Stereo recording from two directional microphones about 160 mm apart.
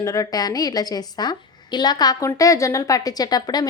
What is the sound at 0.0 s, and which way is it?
A woman's voice, 20° left (ahead or behind).